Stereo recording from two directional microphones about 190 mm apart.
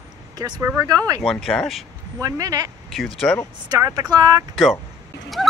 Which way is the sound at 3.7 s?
20° right (ahead or behind).